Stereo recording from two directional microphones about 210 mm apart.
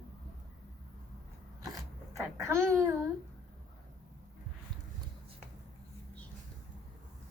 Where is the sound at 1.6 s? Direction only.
15° right (ahead or behind).